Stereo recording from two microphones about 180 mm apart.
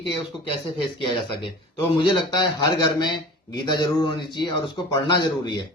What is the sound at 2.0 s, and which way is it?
A man's voice, 25° left (ahead or behind).